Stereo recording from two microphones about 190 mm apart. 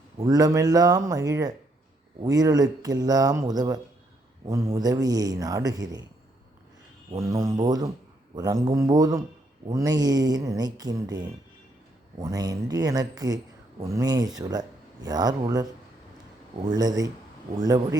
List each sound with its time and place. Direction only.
0.3 s speech: 20° right (ahead or behind)
7.2 s speech: 15° right (ahead or behind)
16.6 s speech: 20° right (ahead or behind)